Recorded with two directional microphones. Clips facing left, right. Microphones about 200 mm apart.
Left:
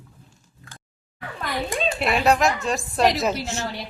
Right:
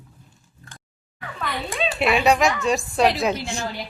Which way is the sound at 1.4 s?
45° left (ahead or behind).